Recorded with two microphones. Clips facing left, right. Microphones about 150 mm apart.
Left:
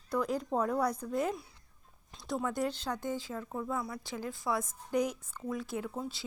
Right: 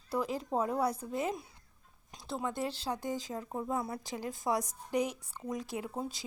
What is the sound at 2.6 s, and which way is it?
A woman's voice, 35° right (ahead or behind).